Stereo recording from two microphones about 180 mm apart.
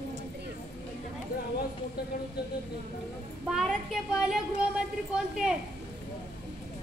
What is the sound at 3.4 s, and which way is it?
A woman's voice, centre (ahead or behind).